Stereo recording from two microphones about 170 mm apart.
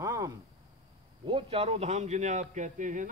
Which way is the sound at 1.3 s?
35° right (ahead or behind).